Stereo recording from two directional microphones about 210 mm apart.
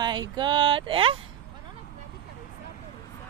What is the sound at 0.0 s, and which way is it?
Speech, 20° right (ahead or behind).